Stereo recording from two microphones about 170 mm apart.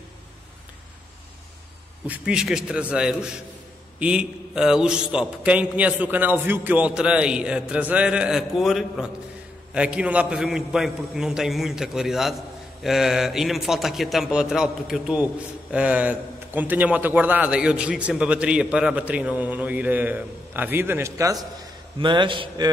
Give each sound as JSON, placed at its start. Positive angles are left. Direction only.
{"t": 2.0, "sound": "a man's voice", "side_deg": -5}